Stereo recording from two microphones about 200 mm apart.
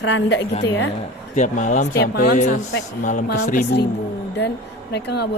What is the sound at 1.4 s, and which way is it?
Speech, 40° left (ahead or behind).